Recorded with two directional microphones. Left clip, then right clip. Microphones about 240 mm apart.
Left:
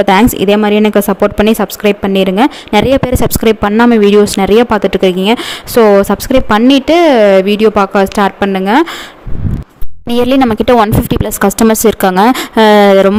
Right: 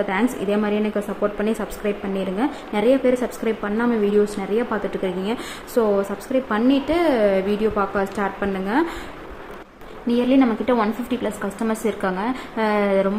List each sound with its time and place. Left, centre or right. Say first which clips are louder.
0.0 s speech: left 14 dB; left
10.1 s speech: left 9 dB; left